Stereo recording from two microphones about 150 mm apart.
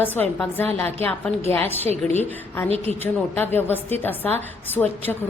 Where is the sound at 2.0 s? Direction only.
10° left (ahead or behind).